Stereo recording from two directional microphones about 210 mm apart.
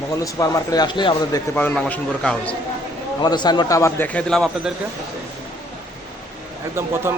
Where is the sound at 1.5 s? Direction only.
5° left (ahead or behind).